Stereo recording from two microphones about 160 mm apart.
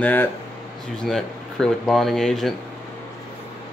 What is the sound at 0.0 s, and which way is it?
Speech, 10° left (ahead or behind).